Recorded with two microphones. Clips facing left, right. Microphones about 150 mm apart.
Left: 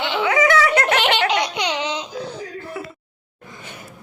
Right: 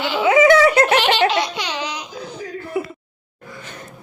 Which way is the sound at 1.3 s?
20° left (ahead or behind).